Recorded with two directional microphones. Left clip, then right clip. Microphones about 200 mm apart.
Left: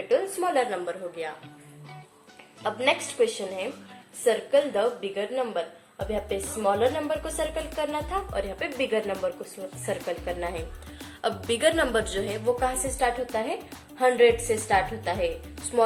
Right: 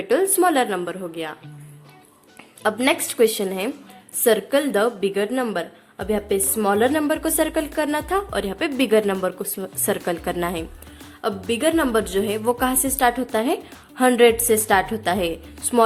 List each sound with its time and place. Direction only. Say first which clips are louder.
0.1 s a woman's voice: right 7 dB; 50° right (ahead or behind)
2.6 s a woman's voice: right 5 dB; 50° right (ahead or behind)
11.4 s a woman's voice: right 3 dB; 20° right (ahead or behind); by 15.9 s 45° right (ahead or behind)